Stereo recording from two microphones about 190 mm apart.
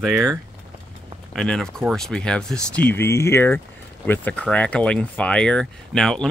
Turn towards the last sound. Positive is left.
turn(degrees=0)  # may be behind; listen again after turning